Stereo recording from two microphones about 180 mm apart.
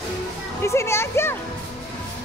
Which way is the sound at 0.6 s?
15° left (ahead or behind).